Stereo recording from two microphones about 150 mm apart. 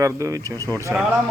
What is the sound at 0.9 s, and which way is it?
Speech, 10° right (ahead or behind).